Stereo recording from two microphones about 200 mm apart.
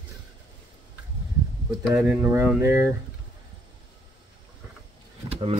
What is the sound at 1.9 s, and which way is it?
Speech, 10° right (ahead or behind).